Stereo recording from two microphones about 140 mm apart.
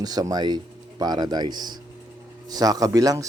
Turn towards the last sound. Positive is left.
turn(degrees=-25)  # may be behind; listen again after turning